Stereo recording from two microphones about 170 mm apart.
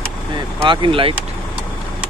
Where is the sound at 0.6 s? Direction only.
30° right (ahead or behind).